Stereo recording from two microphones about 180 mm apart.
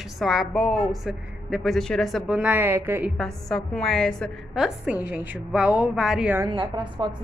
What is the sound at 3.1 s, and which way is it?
A woman's voice, 5° left (ahead or behind).